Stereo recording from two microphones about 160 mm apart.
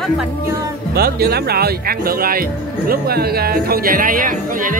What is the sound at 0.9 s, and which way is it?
A woman's voice, 70° right (ahead or behind).